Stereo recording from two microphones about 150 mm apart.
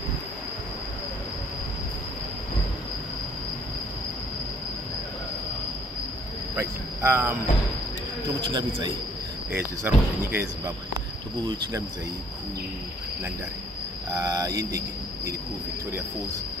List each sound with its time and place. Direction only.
6.5 s cricket: 15° right (ahead or behind)
8.4 s speech: 30° right (ahead or behind)
9.9 s speech: 10° right (ahead or behind)
11.4 s speech: 30° right (ahead or behind)
14.1 s speech: 25° right (ahead or behind)